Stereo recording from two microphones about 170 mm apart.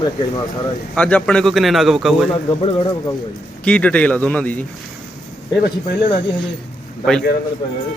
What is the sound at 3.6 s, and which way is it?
Speech, 5° left (ahead or behind).